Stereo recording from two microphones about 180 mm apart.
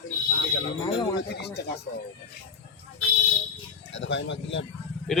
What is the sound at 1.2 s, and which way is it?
Speech, 65° left (ahead or behind).